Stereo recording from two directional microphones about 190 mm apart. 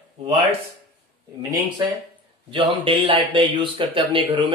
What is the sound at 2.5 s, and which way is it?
Speech, 25° right (ahead or behind).